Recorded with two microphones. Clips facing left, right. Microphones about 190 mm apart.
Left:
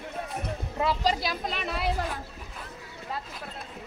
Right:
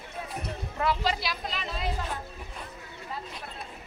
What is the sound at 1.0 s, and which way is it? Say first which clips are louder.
Speech: left 3 dB; 40° left (ahead or behind).